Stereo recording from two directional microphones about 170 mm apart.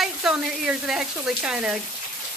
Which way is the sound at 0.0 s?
5° right (ahead or behind).